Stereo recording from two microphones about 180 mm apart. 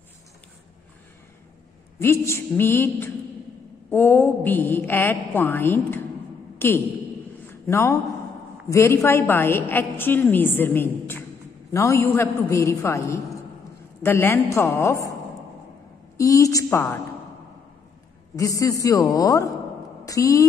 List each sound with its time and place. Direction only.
2.0 s a woman's voice: 15° left (ahead or behind)
16.2 s a woman's voice: 15° left (ahead or behind)
18.3 s a woman's voice: 20° left (ahead or behind)